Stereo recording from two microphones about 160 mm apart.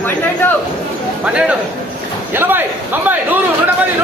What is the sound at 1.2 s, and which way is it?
Speech, 5° right (ahead or behind).